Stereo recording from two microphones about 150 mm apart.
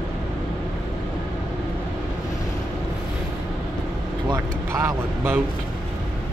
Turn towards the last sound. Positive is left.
turn(degrees=-15)  # may be behind; listen again after turning